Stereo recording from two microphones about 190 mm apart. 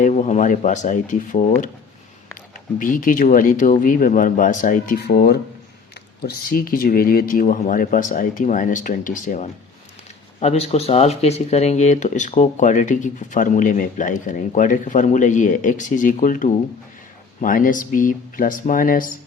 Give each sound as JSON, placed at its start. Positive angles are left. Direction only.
{"t": 0.0, "sound": "speech", "side_deg": 40}
{"t": 4.9, "sound": "speech", "side_deg": 60}